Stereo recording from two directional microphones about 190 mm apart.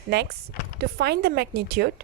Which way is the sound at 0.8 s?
60° right (ahead or behind).